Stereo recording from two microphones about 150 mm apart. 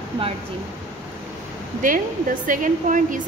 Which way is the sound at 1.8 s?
65° right (ahead or behind).